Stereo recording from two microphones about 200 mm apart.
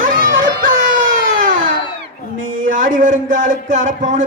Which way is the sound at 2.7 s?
40° right (ahead or behind).